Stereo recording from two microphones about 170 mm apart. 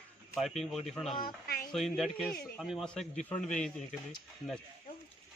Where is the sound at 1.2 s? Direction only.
60° left (ahead or behind).